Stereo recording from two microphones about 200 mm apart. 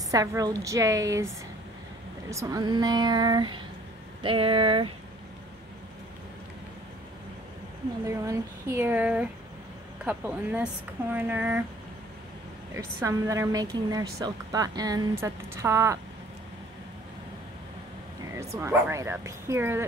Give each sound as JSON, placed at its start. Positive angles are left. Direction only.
{"t": 0.1, "sound": "a woman's voice", "side_deg": -15}
{"t": 2.3, "sound": "speech", "side_deg": -20}
{"t": 8.1, "sound": "a woman's voice", "side_deg": -15}
{"t": 12.7, "sound": "a woman's voice", "side_deg": -15}
{"t": 18.3, "sound": "a woman's voice", "side_deg": -15}